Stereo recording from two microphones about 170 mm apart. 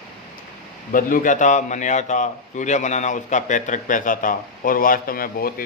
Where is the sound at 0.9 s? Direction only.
55° left (ahead or behind).